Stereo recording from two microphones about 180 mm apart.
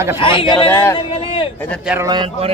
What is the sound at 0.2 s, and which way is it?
Speech, 30° left (ahead or behind).